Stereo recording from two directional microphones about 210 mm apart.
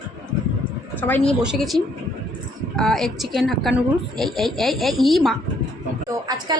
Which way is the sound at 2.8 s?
Centre (ahead or behind).